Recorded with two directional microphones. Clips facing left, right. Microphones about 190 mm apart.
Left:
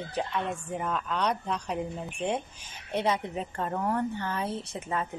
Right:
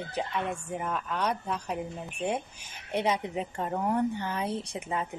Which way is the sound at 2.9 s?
15° right (ahead or behind).